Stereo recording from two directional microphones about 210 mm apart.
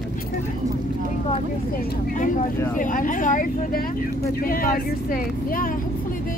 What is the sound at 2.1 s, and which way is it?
Speech, 40° left (ahead or behind).